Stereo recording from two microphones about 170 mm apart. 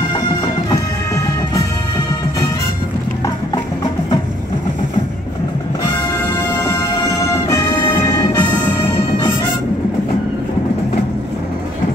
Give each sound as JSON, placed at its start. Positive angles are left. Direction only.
{"t": 0.3, "sound": "music", "side_deg": 20}
{"t": 3.5, "sound": "music", "side_deg": 25}
{"t": 6.4, "sound": "music", "side_deg": 20}